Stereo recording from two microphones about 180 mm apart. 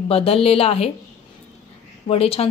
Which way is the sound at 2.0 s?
35° left (ahead or behind).